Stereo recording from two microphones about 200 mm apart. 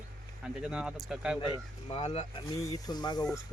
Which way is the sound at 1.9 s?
30° left (ahead or behind).